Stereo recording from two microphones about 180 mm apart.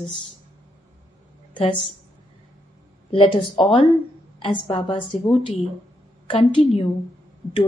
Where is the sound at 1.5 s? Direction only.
25° left (ahead or behind).